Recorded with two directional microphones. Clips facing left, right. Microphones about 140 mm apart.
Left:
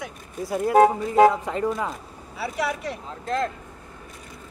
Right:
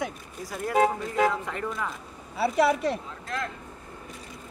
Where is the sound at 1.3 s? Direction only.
25° left (ahead or behind).